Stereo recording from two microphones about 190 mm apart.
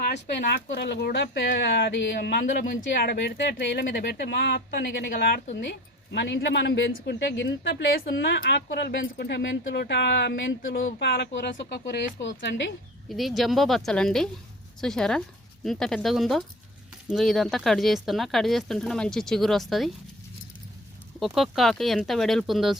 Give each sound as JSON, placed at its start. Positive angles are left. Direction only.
{"t": 0.0, "sound": "speech", "side_deg": 60}
{"t": 11.0, "sound": "speech", "side_deg": 65}
{"t": 13.1, "sound": "speech", "side_deg": 0}
{"t": 21.2, "sound": "speech", "side_deg": 0}